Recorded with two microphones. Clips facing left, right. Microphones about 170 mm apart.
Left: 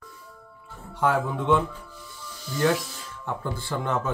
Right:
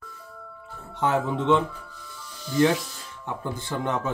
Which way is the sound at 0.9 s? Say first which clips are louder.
Even; 20° right (ahead or behind).